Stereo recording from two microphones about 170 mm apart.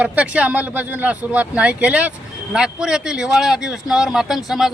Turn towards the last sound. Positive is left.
turn(degrees=0)  # may be behind; listen again after turning